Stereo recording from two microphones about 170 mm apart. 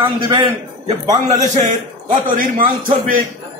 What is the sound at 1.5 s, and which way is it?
Speech, 50° right (ahead or behind).